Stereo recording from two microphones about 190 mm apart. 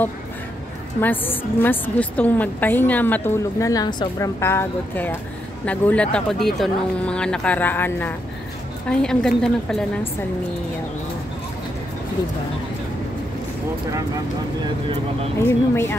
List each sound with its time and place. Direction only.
1.0 s a woman's voice: 10° left (ahead or behind)
13.9 s speech: 20° right (ahead or behind)
15.4 s a woman's voice: 10° left (ahead or behind)